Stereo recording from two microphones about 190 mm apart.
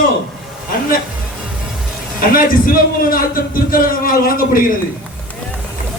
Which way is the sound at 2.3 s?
50° left (ahead or behind).